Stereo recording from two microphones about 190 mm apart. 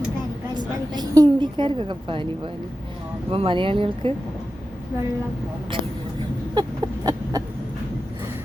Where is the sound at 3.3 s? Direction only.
25° right (ahead or behind).